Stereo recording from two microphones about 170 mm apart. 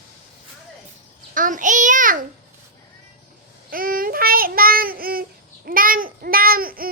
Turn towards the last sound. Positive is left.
turn(degrees=-60)  # may be behind; listen again after turning